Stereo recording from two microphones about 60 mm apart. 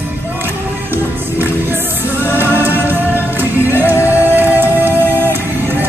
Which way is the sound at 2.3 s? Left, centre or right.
Right.